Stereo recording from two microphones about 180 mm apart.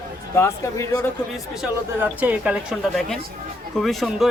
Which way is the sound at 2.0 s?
10° right (ahead or behind).